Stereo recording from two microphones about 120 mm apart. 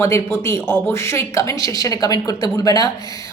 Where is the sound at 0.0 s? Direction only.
25° left (ahead or behind).